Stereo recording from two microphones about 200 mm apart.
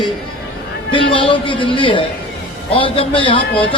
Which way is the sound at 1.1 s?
25° left (ahead or behind).